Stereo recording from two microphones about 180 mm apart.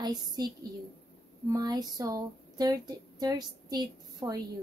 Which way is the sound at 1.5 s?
20° right (ahead or behind).